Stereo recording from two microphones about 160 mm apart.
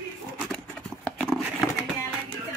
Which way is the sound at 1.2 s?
Centre (ahead or behind).